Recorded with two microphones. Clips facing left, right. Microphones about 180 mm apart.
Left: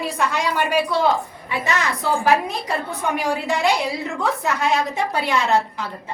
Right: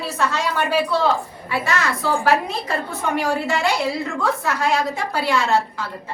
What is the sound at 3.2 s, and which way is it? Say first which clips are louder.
A woman's voice: right 1 dB; 15° left (ahead or behind).